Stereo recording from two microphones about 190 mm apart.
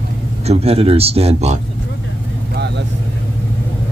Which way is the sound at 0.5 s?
30° right (ahead or behind).